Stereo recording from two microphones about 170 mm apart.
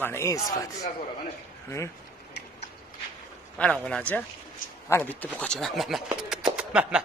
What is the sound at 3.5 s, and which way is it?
Speech, 5° left (ahead or behind).